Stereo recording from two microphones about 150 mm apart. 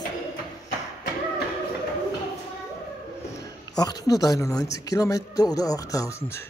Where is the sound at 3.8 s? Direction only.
25° left (ahead or behind).